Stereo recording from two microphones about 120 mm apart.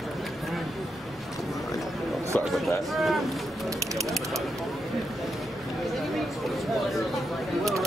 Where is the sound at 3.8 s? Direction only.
25° right (ahead or behind).